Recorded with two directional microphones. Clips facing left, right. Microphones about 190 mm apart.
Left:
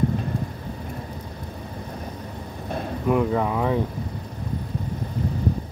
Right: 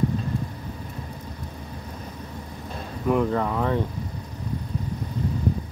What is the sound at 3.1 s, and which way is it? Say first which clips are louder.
Speech: left 1 dB; 5° left (ahead or behind).